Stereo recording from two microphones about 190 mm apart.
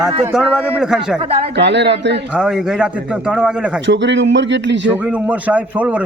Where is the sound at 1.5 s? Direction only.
65° right (ahead or behind).